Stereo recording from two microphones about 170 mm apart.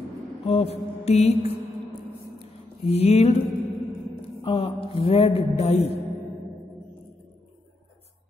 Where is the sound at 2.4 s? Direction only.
35° left (ahead or behind).